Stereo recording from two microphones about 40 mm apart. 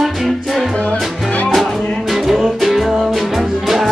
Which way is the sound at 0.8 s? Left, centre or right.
Left.